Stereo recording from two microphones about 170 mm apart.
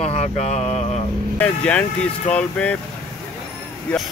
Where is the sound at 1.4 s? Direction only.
10° left (ahead or behind).